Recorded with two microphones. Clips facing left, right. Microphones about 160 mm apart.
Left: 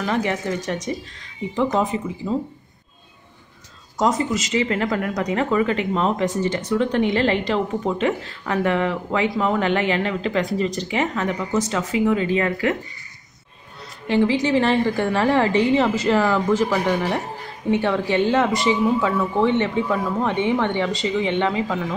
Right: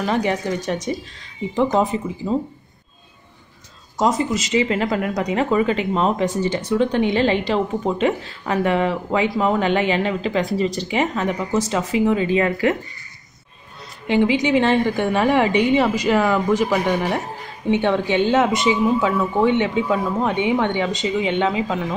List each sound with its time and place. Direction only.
0.0 s a woman's voice: 20° right (ahead or behind)
4.3 s a woman's voice: 30° right (ahead or behind); by 6.6 s 10° right (ahead or behind)
6.8 s a woman's voice: 25° right (ahead or behind)
14.0 s a woman's voice: 15° right (ahead or behind)